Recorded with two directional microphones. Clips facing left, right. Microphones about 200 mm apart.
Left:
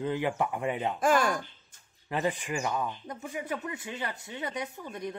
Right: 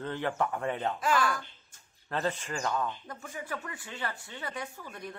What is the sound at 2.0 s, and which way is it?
Speech, 15° left (ahead or behind).